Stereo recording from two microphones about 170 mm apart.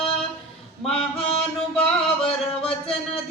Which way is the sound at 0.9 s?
35° left (ahead or behind).